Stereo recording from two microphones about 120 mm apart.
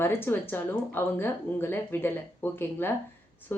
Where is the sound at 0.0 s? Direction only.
20° left (ahead or behind).